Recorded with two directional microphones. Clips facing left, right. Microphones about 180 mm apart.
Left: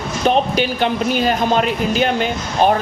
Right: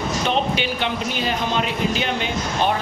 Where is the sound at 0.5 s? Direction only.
45° left (ahead or behind).